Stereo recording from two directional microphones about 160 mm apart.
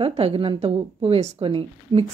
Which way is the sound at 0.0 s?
40° right (ahead or behind).